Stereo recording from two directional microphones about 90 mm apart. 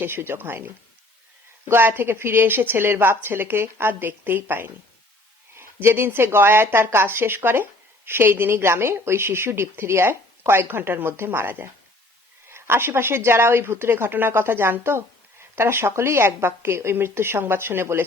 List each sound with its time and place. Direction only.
0.0 s a woman's voice: 25° right (ahead or behind)